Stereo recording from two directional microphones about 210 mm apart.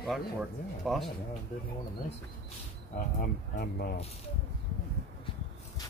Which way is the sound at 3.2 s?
45° left (ahead or behind).